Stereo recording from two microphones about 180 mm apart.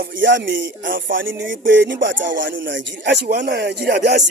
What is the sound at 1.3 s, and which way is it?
Speech, 90° right.